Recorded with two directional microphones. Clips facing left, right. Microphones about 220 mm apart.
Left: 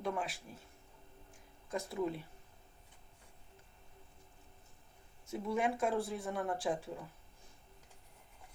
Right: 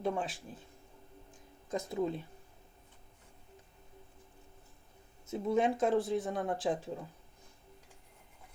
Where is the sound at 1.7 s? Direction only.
20° right (ahead or behind).